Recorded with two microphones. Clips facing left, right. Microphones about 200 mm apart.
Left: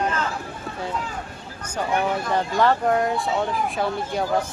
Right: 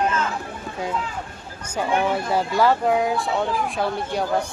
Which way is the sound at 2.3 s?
5° right (ahead or behind).